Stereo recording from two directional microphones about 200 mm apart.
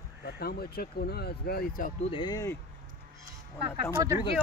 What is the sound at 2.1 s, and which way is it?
Speech, 20° left (ahead or behind).